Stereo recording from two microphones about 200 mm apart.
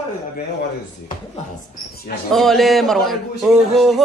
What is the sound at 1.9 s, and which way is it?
Speech, 50° left (ahead or behind).